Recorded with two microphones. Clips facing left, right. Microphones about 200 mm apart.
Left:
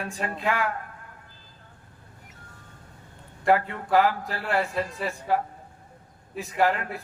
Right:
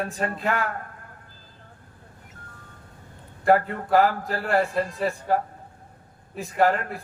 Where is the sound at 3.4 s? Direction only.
45° right (ahead or behind).